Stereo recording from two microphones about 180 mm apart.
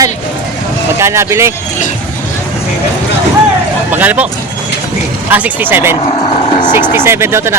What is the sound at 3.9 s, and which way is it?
Speech, 10° right (ahead or behind).